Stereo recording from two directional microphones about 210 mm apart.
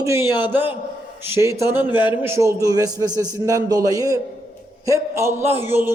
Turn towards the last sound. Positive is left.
turn(degrees=-10)  # may be behind; listen again after turning